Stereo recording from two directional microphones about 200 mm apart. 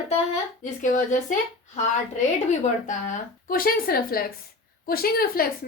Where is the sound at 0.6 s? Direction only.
40° left (ahead or behind).